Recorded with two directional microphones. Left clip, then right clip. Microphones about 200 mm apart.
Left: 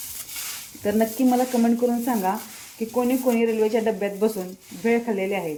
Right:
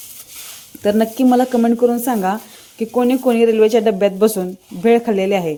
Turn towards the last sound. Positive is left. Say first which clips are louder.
# right 9 dB
turn(degrees=-55)  # may be behind; listen again after turning